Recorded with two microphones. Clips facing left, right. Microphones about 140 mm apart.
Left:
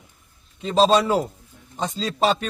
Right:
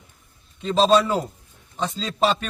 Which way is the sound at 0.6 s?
35° left (ahead or behind).